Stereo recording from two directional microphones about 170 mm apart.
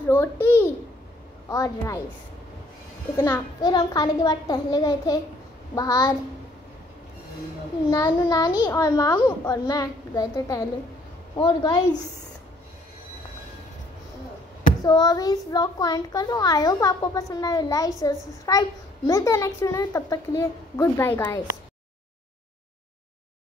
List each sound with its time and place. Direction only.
0.1 s a child's voice: 15° left (ahead or behind)
3.2 s a child's voice: 20° left (ahead or behind)
7.9 s a child's voice: 20° left (ahead or behind)
14.8 s a child's voice: 25° left (ahead or behind)